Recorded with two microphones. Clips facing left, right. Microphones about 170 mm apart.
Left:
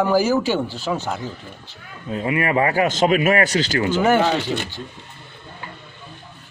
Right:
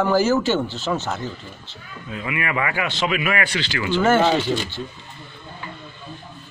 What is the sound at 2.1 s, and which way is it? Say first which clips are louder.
Speech: left 6 dB; 35° left (ahead or behind).